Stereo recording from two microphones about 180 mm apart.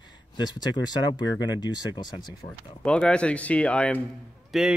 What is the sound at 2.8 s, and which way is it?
Speech, 5° left (ahead or behind).